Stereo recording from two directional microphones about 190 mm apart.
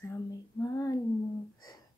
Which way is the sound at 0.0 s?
15° left (ahead or behind).